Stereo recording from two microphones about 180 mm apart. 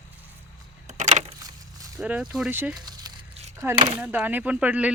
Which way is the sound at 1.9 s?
5° right (ahead or behind).